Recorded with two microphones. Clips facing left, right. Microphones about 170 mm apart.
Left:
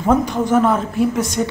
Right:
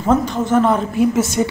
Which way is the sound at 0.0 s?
10° left (ahead or behind).